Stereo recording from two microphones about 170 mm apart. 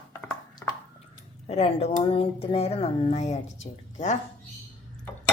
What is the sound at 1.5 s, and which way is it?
Speech, 40° left (ahead or behind).